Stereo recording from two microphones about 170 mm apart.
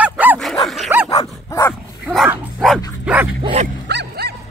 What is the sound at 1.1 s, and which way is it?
Dog, 15° left (ahead or behind).